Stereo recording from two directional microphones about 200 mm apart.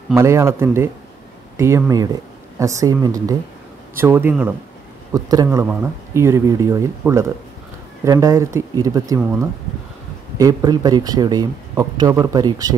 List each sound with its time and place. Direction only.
0.1 s speech: 15° right (ahead or behind)